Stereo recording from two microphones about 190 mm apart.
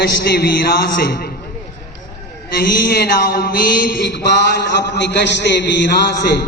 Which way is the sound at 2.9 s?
55° left (ahead or behind).